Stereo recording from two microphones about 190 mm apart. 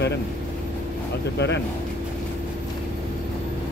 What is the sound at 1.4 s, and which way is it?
Speech, 65° left (ahead or behind).